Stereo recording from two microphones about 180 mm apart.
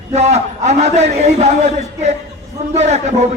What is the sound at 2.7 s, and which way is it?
Speech, 40° right (ahead or behind).